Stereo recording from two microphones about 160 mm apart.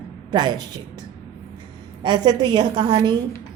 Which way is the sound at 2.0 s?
25° right (ahead or behind).